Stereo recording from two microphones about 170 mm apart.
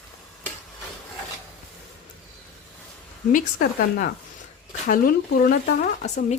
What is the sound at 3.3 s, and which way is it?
A woman's voice, 60° left (ahead or behind).